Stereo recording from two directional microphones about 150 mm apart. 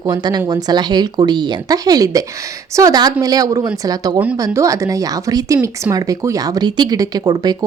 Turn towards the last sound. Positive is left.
turn(degrees=-25)  # may be behind; listen again after turning